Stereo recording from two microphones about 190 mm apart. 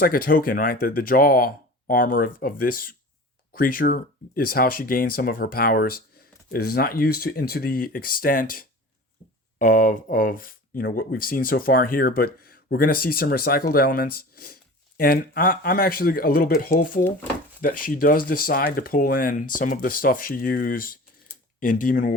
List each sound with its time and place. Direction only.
0.0 s speech: 50° left (ahead or behind)